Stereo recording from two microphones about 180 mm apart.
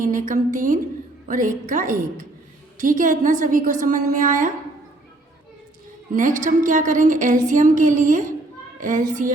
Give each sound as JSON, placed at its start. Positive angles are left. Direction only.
{"t": 0.0, "sound": "a woman's voice", "side_deg": -45}
{"t": 6.1, "sound": "a woman's voice", "side_deg": -45}